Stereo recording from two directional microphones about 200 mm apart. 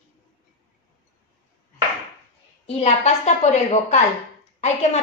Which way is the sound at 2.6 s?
30° left (ahead or behind).